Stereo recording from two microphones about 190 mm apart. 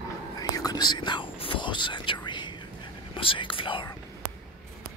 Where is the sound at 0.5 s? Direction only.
20° left (ahead or behind).